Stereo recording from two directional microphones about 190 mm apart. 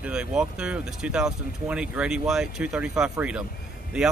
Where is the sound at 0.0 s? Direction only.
5° right (ahead or behind).